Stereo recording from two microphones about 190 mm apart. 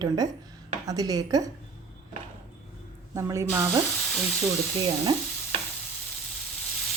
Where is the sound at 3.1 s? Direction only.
15° right (ahead or behind).